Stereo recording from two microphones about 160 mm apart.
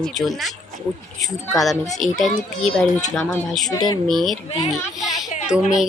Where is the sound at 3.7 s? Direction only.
25° left (ahead or behind).